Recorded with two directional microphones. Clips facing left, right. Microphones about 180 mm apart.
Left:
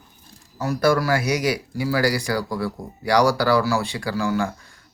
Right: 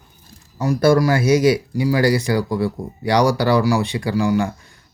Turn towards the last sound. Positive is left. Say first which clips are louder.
# right 5 dB
turn(degrees=-15)  # may be behind; listen again after turning